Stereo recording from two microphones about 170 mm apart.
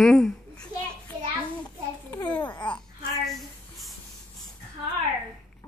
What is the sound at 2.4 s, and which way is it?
Speech, 25° left (ahead or behind).